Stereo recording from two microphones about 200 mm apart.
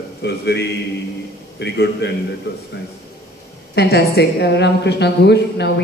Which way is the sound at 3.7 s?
55° left (ahead or behind).